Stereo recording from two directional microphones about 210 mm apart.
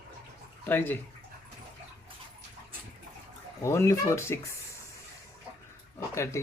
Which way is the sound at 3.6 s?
15° left (ahead or behind).